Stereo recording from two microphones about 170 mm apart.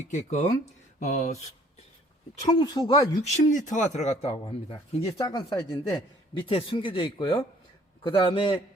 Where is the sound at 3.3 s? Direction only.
45° left (ahead or behind).